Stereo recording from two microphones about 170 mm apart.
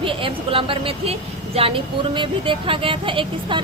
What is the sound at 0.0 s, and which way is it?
Speech, 30° right (ahead or behind).